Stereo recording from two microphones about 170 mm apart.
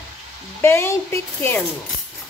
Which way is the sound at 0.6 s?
15° left (ahead or behind).